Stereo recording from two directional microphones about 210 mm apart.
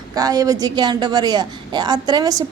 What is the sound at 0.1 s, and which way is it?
A woman's voice, 20° right (ahead or behind).